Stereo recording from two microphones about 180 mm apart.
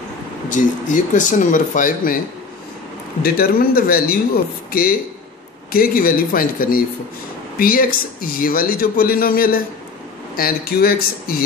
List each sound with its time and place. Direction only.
0.5 s speech: 45° left (ahead or behind)
3.2 s speech: 55° left (ahead or behind)
5.7 s speech: 55° left (ahead or behind)